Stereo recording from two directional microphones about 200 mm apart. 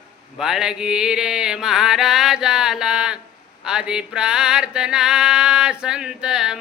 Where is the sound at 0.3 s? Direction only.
Centre (ahead or behind).